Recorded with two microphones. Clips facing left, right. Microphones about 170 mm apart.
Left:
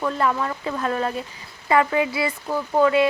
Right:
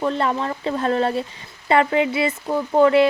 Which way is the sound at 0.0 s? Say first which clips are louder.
Right 1 dB; 25° right (ahead or behind).